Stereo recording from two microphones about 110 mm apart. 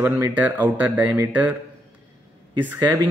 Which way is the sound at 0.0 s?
20° right (ahead or behind).